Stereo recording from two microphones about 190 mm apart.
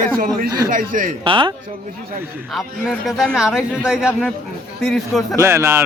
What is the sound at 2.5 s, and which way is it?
Speech, centre (ahead or behind).